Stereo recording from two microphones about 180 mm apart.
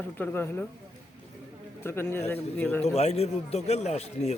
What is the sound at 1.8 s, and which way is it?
Speech, 15° left (ahead or behind).